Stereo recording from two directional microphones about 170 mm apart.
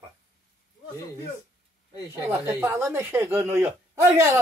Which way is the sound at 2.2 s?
15° right (ahead or behind).